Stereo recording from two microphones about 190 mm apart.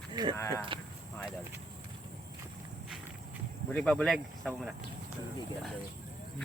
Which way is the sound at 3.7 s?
5° left (ahead or behind).